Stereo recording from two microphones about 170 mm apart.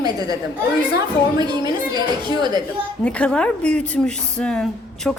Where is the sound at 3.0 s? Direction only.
5° left (ahead or behind).